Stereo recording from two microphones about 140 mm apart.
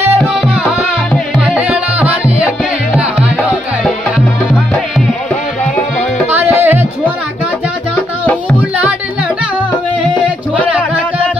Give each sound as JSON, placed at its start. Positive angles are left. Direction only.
{"t": 1.1, "sound": "music", "side_deg": -5}
{"t": 6.3, "sound": "music", "side_deg": -15}